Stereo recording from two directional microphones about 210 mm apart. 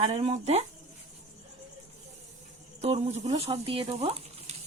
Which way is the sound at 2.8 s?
30° right (ahead or behind).